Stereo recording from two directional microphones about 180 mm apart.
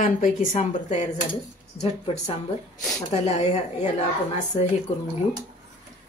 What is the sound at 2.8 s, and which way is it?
Speech, centre (ahead or behind).